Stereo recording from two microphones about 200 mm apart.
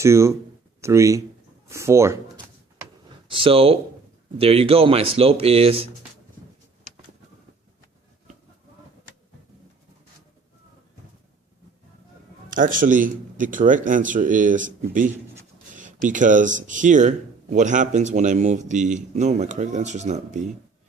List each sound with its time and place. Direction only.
0.0 s speech: 15° right (ahead or behind)
3.2 s speech: 25° right (ahead or behind)
12.5 s a man's voice: 40° right (ahead or behind)
15.7 s a sound: 40° right (ahead or behind)
16.0 s a man's voice: 40° right (ahead or behind)